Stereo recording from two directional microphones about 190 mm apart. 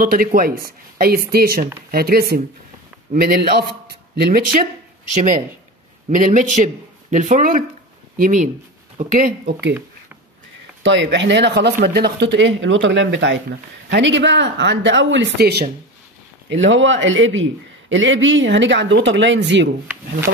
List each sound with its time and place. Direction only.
0.0 s speech: 50° right (ahead or behind)
9.5 s speech: 65° right (ahead or behind)
10.8 s a man's voice: 70° right (ahead or behind)
16.4 s a man's voice: 75° right (ahead or behind)